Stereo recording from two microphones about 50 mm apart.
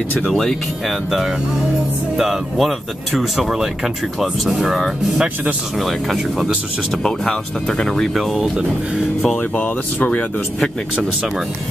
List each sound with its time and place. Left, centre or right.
0.3 s speech: centre
0.8 s speech: centre
7.0 s speech: centre
8.1 s speech: centre
9.4 s speech: left